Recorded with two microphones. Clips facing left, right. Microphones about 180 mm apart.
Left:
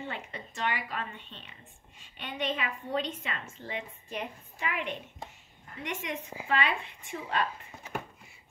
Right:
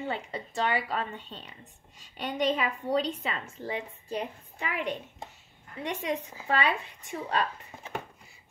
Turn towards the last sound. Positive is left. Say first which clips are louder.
# right 1 dB
turn(degrees=-40)  # may be behind; listen again after turning